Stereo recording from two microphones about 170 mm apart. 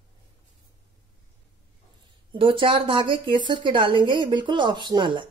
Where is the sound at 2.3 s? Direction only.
30° right (ahead or behind).